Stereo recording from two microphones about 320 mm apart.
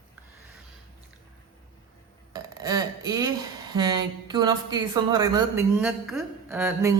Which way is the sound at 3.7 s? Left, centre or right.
Centre.